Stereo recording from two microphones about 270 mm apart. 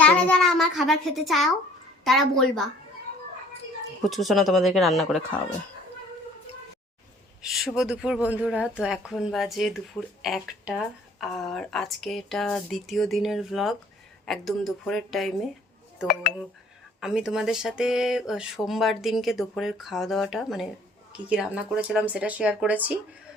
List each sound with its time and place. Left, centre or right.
0.0 s speech: centre
4.1 s speech: centre
7.4 s speech: centre
17.0 s speech: centre